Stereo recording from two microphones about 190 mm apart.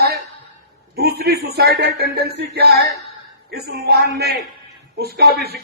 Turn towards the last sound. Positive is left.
turn(degrees=-55)  # may be behind; listen again after turning